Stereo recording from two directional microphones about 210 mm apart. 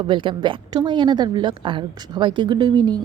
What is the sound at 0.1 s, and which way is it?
A woman's voice, 25° right (ahead or behind).